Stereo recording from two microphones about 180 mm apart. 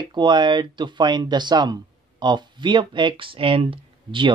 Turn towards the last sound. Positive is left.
turn(degrees=-30)  # may be behind; listen again after turning